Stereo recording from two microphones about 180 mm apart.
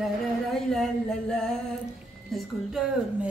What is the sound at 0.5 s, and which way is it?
Speech, 5° left (ahead or behind).